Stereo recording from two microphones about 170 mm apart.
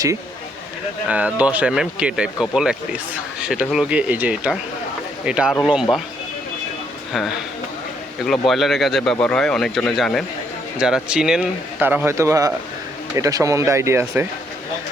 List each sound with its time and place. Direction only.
1.0 s speech: 10° right (ahead or behind)
7.1 s speech: centre (ahead or behind); by 14.3 s 15° right (ahead or behind)